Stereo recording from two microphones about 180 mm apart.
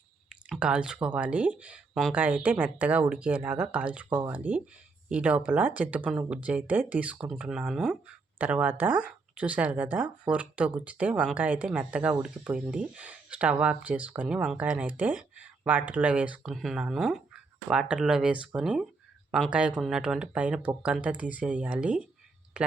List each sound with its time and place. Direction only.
0.3 s speech: 5° right (ahead or behind)